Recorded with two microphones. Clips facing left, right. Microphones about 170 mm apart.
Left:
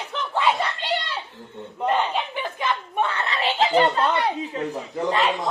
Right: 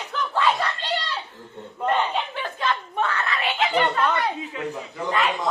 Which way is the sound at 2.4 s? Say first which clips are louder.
Even; 15° left (ahead or behind).